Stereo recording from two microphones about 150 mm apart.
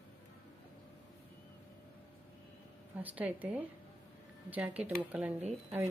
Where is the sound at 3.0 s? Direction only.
10° right (ahead or behind).